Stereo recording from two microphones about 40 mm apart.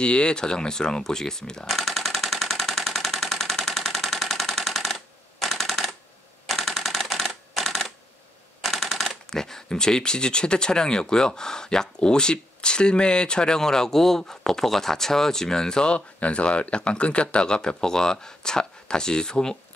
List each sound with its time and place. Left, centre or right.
0.0 s speech: left
1.7 s a sound: centre
6.4 s typewriter: centre
8.6 s speech: centre
16.2 s speech: left